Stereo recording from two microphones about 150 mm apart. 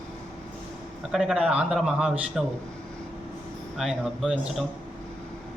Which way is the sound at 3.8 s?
5° right (ahead or behind).